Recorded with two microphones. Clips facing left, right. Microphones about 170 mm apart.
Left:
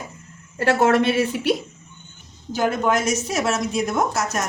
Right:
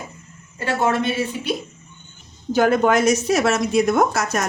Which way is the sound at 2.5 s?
65° right (ahead or behind).